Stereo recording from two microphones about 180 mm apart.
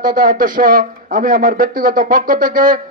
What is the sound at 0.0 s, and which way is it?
Speech, 50° right (ahead or behind).